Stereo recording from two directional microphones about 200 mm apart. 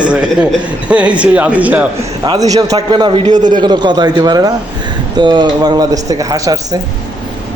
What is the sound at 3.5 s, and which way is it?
Speech, 20° right (ahead or behind).